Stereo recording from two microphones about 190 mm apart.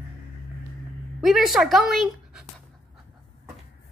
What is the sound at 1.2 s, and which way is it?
Speech, centre (ahead or behind).